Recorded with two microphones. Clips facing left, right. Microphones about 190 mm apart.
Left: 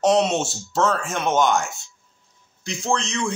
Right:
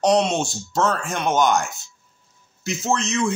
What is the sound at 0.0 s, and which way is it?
A man's voice, centre (ahead or behind).